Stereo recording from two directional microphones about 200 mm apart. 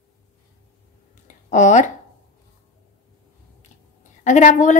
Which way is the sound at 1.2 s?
35° left (ahead or behind).